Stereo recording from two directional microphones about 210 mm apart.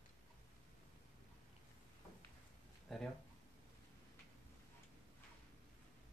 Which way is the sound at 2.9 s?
Centre (ahead or behind).